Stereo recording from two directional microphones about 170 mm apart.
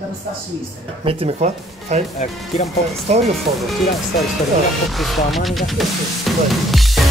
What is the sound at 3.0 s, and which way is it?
Speech, 40° right (ahead or behind).